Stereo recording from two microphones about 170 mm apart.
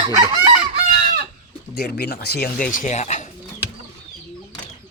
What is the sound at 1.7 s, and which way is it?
Speech, 70° left (ahead or behind).